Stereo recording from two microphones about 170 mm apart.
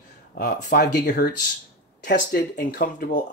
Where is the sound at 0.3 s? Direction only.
55° left (ahead or behind).